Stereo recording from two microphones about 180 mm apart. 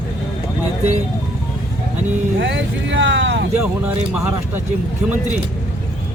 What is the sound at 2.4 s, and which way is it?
Speech, 90° right.